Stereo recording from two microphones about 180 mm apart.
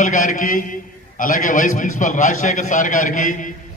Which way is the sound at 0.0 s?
45° left (ahead or behind).